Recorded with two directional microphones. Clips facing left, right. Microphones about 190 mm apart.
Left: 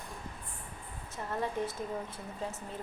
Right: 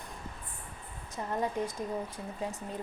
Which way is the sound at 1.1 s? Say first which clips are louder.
Right 2 dB; 15° right (ahead or behind).